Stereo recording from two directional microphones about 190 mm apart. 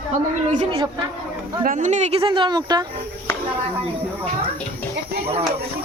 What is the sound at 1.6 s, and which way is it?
Speech, 45° right (ahead or behind).